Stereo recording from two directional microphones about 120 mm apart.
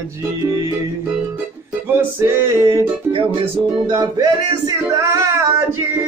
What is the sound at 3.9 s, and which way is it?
Music, 30° right (ahead or behind).